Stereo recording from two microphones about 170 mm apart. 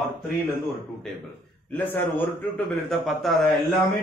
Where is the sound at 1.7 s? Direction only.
10° left (ahead or behind).